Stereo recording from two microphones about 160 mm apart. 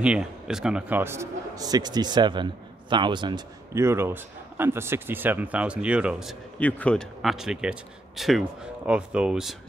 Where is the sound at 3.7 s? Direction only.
15° right (ahead or behind).